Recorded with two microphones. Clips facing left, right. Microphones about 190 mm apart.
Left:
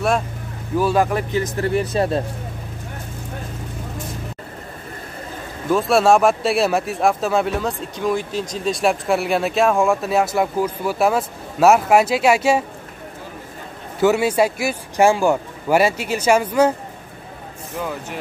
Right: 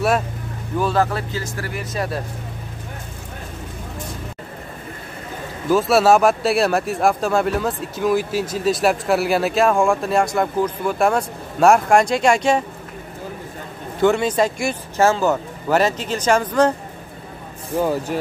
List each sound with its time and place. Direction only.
0.7 s speech: 10° left (ahead or behind)
5.7 s speech: centre (ahead or behind)
13.9 s speech: 5° left (ahead or behind)
17.7 s speech: 35° right (ahead or behind)